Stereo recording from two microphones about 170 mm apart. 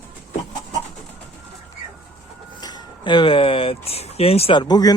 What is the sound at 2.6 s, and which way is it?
Speech, 25° left (ahead or behind).